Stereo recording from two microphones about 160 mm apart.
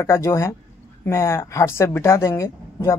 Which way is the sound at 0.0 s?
15° left (ahead or behind).